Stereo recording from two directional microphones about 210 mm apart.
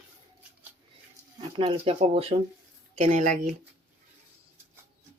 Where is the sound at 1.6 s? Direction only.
25° right (ahead or behind).